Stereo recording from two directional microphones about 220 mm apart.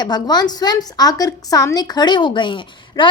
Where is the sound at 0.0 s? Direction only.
20° left (ahead or behind).